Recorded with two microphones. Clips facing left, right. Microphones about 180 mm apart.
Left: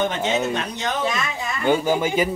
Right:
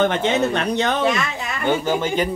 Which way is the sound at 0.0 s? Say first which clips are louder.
Right 4 dB; 60° right (ahead or behind).